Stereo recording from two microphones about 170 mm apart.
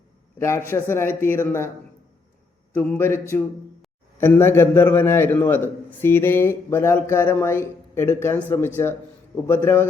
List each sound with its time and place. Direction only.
0.3 s a man's voice: 15° left (ahead or behind)
2.7 s a man's voice: 10° left (ahead or behind)